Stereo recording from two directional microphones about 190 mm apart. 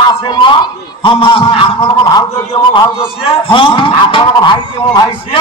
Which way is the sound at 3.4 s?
25° left (ahead or behind).